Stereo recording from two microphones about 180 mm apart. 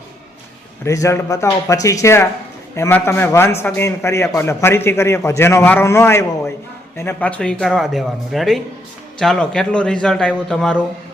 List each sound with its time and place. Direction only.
0.9 s a man's voice: 15° left (ahead or behind)